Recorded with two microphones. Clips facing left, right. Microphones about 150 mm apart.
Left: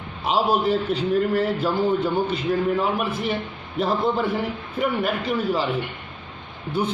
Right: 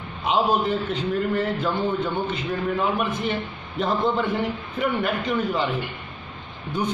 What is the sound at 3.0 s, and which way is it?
A man's voice, 10° left (ahead or behind).